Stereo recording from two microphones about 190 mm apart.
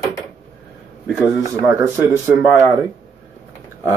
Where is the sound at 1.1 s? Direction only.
10° right (ahead or behind).